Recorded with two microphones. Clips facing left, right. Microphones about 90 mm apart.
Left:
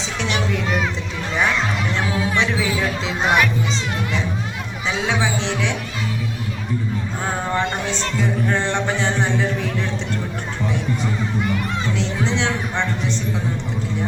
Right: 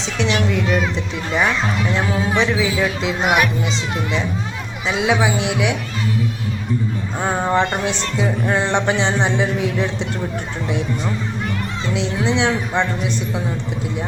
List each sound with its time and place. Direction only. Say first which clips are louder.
0.2 s speech: right 4 dB; centre (ahead or behind)
3.2 s a man's voice: even; 10° right (ahead or behind)
4.9 s a man's voice: right 4 dB; 5° right (ahead or behind)
7.5 s speech: right 4 dB; 20° right (ahead or behind)
11.9 s a man's voice: right 6 dB; 15° right (ahead or behind)